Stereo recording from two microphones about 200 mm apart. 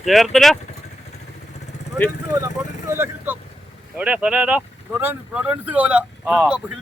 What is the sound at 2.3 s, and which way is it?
Speech, 15° right (ahead or behind).